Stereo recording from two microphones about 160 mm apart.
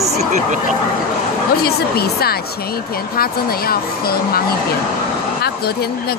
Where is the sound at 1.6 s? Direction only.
75° left (ahead or behind).